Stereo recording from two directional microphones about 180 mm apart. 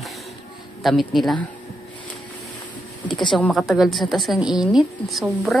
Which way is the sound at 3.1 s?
25° left (ahead or behind).